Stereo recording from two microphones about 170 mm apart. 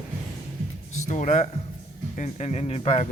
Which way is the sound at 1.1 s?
45° left (ahead or behind).